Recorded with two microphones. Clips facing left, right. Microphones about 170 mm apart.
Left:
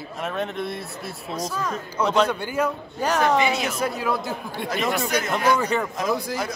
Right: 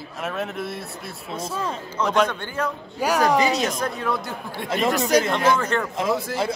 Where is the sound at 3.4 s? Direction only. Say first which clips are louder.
Right 2 dB; 40° right (ahead or behind).